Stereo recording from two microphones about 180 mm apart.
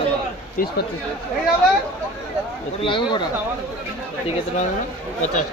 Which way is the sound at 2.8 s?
25° left (ahead or behind).